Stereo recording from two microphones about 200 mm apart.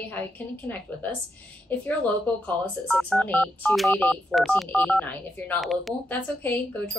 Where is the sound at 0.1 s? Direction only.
10° left (ahead or behind).